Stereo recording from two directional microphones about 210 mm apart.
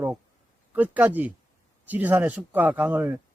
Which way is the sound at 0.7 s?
5° right (ahead or behind).